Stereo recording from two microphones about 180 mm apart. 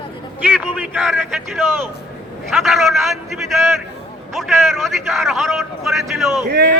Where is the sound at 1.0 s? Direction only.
Centre (ahead or behind).